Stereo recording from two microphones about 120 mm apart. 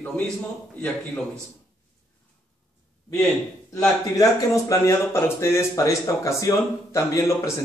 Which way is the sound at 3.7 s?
30° left (ahead or behind).